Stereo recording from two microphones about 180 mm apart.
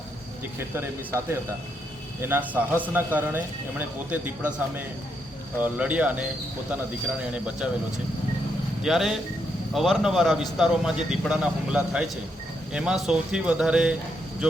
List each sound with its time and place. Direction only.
0.8 s a man's voice: 15° right (ahead or behind)
7.3 s a man's voice: 5° right (ahead or behind)
8.8 s a man's voice: centre (ahead or behind)